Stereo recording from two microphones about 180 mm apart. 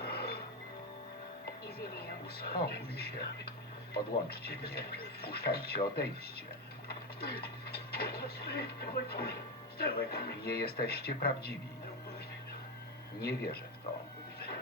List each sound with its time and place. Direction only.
0.0 s music: 60° left (ahead or behind)
1.6 s speech: 60° left (ahead or behind)
6.8 s speech: 60° left (ahead or behind)
13.2 s speech: 60° left (ahead or behind)